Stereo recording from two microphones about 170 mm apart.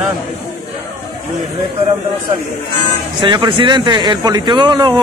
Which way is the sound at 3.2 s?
30° right (ahead or behind).